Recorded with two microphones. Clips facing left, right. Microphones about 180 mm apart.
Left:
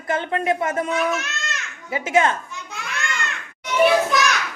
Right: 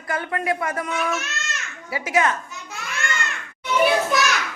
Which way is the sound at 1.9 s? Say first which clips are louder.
Left 2 dB; 25° left (ahead or behind).